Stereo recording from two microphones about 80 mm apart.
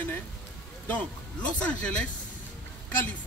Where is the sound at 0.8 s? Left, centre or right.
Centre.